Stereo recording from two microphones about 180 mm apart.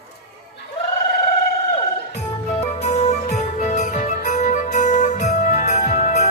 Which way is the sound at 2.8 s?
40° left (ahead or behind).